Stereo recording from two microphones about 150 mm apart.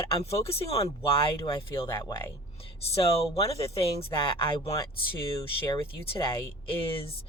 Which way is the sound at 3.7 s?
35° left (ahead or behind).